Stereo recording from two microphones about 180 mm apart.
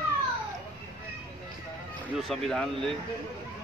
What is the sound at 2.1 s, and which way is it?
Speech, centre (ahead or behind).